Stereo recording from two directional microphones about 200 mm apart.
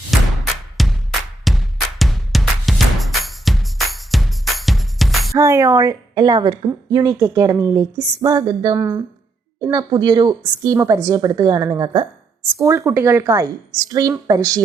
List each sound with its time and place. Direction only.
0.1 s music: centre (ahead or behind)
1.5 s drum: centre (ahead or behind)
5.3 s a woman's voice: 15° right (ahead or behind)